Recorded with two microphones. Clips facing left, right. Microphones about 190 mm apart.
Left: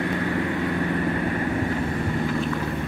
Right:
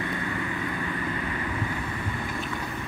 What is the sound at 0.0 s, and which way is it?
Vehicle, 65° left (ahead or behind).